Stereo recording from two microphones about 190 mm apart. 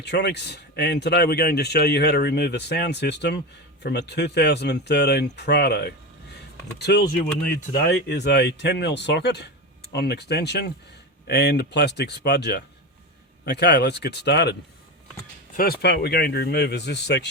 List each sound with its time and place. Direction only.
0.0 s speech: 65° left (ahead or behind)
15.5 s speech: 50° left (ahead or behind)